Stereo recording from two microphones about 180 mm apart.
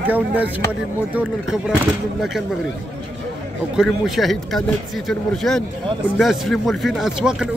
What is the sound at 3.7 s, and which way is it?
Speech, centre (ahead or behind).